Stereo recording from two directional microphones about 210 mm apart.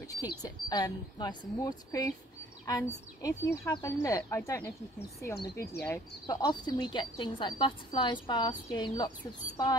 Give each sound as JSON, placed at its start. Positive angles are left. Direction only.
{"t": 0.2, "sound": "a woman's voice", "side_deg": 15}